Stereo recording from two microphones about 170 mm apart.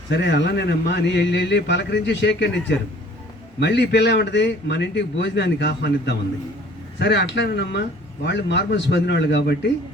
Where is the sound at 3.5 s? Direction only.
80° left.